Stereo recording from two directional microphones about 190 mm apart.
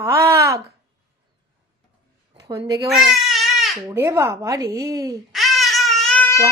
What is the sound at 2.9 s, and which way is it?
Crying, centre (ahead or behind).